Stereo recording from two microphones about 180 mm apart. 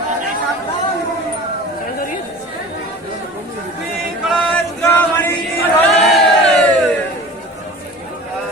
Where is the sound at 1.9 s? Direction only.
50° left (ahead or behind).